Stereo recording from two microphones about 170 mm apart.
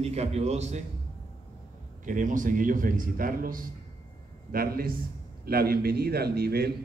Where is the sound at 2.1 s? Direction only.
50° right (ahead or behind).